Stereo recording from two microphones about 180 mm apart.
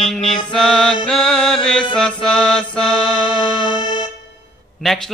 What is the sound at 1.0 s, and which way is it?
Music, 5° left (ahead or behind).